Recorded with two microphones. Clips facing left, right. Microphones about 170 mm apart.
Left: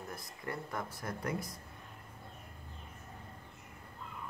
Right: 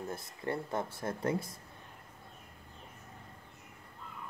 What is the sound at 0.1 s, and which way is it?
Speech, 25° right (ahead or behind).